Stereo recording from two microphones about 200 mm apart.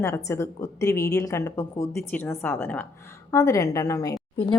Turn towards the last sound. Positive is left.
turn(degrees=20)  # may be behind; listen again after turning